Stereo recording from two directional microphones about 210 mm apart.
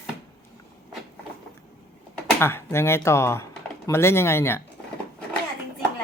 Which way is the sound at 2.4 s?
10° left (ahead or behind).